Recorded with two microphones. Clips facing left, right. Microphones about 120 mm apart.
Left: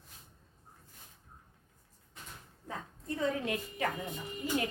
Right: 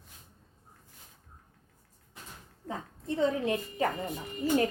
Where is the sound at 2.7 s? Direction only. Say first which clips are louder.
Right 4 dB; 25° right (ahead or behind).